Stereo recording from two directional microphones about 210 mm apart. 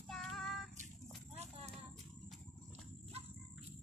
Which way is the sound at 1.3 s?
30° right (ahead or behind).